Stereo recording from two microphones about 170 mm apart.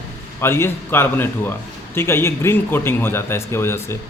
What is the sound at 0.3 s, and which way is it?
Speech, 15° left (ahead or behind).